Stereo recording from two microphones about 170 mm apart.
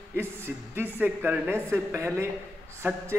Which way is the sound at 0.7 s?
10° right (ahead or behind).